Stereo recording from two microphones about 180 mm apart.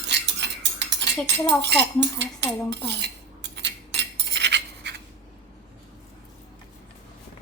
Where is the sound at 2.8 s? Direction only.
70° right (ahead or behind).